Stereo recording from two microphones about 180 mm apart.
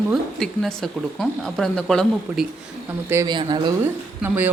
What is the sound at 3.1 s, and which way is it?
Speech, 20° right (ahead or behind).